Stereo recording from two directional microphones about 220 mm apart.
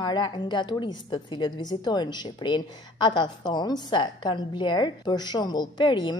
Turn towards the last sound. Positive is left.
turn(degrees=20)  # may be behind; listen again after turning